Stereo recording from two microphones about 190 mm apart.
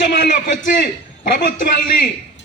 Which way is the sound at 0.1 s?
40° left (ahead or behind).